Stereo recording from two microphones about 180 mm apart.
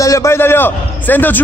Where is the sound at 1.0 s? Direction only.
10° left (ahead or behind).